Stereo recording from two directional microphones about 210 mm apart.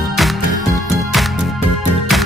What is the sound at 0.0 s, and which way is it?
Music, centre (ahead or behind).